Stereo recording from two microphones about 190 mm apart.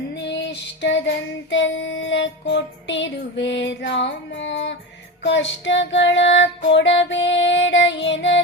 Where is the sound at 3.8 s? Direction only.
70° left (ahead or behind).